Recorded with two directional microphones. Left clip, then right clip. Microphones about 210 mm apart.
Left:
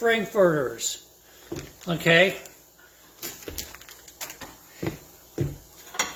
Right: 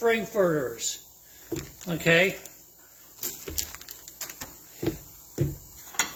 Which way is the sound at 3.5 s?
50° right (ahead or behind).